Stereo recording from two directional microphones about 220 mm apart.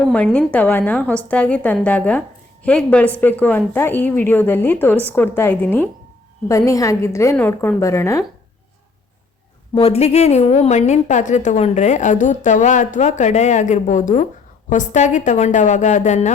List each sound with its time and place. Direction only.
0.0 s a woman's voice: 5° left (ahead or behind)
9.7 s a woman's voice: 25° left (ahead or behind)